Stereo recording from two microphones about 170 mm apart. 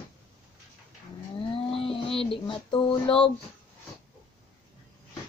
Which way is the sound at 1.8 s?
35° left (ahead or behind).